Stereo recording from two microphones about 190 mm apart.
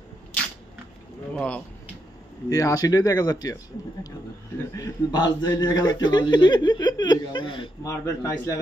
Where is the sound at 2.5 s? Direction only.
15° left (ahead or behind).